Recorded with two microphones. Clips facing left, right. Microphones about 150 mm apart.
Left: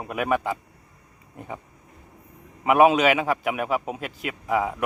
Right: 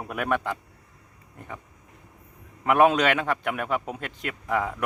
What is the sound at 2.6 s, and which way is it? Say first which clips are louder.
A man's voice: left 2 dB; 5° left (ahead or behind).